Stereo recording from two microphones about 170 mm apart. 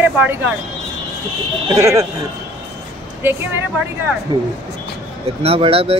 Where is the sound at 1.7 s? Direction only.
20° right (ahead or behind).